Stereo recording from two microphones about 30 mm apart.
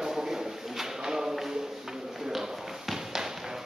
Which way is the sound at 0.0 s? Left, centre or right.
Centre.